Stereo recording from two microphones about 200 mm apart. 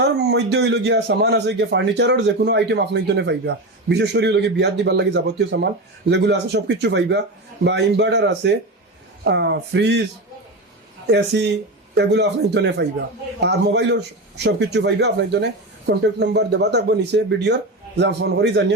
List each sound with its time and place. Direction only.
0.0 s a man's voice: 60° right (ahead or behind)
11.0 s a man's voice: 60° right (ahead or behind)